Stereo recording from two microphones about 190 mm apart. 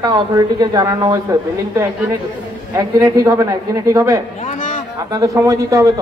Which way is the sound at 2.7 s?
20° right (ahead or behind).